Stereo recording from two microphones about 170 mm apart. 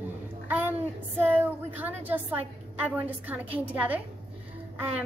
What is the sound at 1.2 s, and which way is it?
A woman's voice, 10° right (ahead or behind).